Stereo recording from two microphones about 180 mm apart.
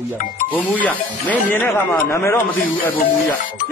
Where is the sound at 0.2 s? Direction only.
50° left (ahead or behind).